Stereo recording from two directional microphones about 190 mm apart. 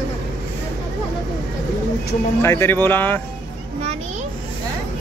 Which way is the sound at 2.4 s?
15° left (ahead or behind).